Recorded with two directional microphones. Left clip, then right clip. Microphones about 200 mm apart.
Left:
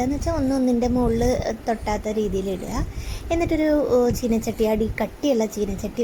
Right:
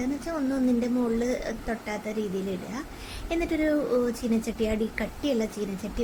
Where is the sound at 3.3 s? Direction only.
20° left (ahead or behind).